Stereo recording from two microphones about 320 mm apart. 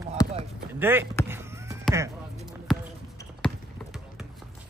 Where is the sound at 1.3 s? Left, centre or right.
Centre.